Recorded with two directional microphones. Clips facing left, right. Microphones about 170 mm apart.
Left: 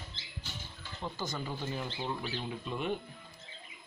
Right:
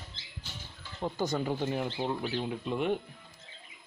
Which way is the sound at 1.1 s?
65° right (ahead or behind).